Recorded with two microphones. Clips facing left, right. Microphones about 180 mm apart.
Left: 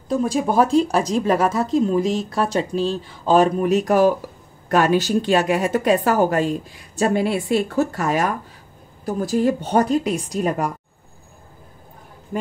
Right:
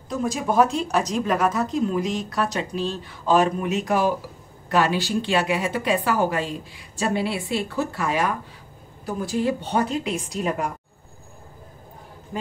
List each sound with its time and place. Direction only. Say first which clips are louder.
0.1 s a woman's voice: left 4 dB; 30° left (ahead or behind)